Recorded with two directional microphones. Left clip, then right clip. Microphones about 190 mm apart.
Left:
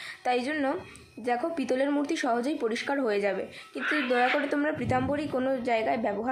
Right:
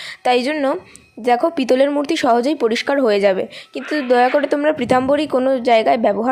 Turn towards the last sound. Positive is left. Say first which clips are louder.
# right 13 dB
turn(degrees=-45)  # may be behind; listen again after turning